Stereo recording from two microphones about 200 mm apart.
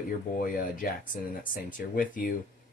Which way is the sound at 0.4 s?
45° left (ahead or behind).